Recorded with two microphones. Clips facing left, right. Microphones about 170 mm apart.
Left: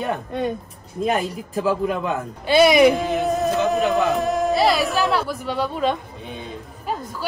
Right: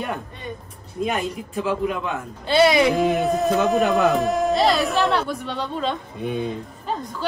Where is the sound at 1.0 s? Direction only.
40° left (ahead or behind).